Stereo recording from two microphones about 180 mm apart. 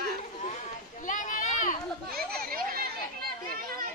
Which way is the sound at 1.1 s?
45° left (ahead or behind).